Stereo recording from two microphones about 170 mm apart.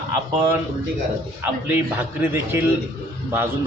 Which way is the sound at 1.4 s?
10° right (ahead or behind).